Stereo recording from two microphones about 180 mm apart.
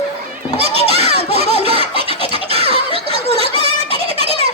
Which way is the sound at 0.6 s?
35° right (ahead or behind).